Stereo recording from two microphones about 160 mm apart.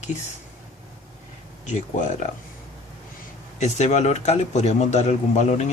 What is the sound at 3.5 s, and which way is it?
Speech, 45° left (ahead or behind).